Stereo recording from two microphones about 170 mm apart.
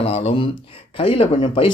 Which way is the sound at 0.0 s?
35° left (ahead or behind).